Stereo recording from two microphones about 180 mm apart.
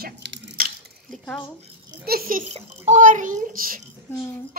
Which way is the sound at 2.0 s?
55° right (ahead or behind).